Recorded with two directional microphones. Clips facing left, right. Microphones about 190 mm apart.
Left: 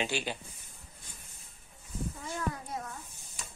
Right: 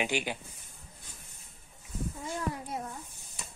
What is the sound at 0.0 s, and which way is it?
Speech, 15° right (ahead or behind).